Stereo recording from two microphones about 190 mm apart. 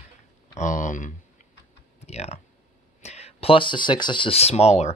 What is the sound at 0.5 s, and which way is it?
Speech, 40° left (ahead or behind).